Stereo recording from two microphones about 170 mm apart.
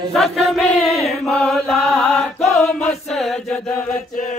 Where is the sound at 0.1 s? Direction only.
Centre (ahead or behind).